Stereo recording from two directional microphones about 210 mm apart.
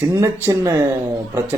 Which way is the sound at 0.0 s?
10° right (ahead or behind).